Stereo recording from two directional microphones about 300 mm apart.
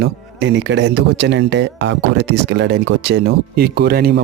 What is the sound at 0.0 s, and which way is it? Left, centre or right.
Speech, right.